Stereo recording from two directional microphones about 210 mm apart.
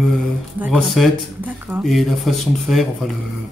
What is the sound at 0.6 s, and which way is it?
Speech, 5° right (ahead or behind).